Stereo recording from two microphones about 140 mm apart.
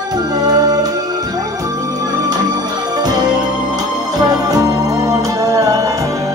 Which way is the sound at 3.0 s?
30° right (ahead or behind).